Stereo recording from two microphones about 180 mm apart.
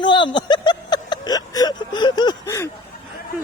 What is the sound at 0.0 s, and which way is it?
Music, 25° left (ahead or behind).